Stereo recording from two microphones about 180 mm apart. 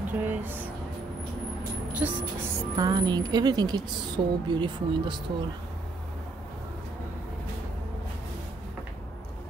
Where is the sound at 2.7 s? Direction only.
20° right (ahead or behind).